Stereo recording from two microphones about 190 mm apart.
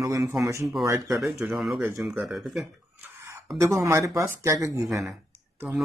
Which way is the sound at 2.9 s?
15° right (ahead or behind).